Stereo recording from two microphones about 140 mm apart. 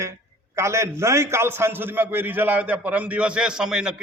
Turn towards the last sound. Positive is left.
turn(degrees=-5)  # may be behind; listen again after turning